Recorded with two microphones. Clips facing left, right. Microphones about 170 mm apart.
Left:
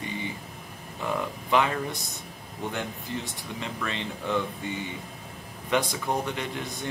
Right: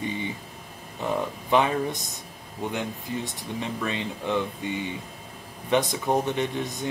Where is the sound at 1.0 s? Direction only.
20° right (ahead or behind).